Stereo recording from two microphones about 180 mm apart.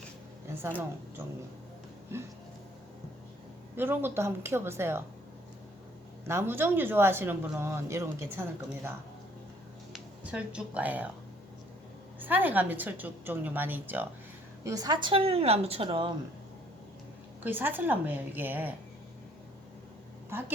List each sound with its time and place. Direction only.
3.8 s speech: 10° right (ahead or behind)
6.2 s speech: 15° right (ahead or behind)
9.9 s speech: 5° right (ahead or behind)
12.2 s a woman's voice: 10° right (ahead or behind); by 16.1 s 30° right (ahead or behind)
17.4 s speech: 10° right (ahead or behind)